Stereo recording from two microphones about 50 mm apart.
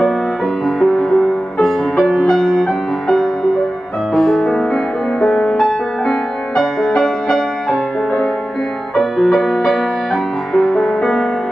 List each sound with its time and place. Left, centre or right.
0.7 s music: centre
2.3 s music: centre
8.9 s music: centre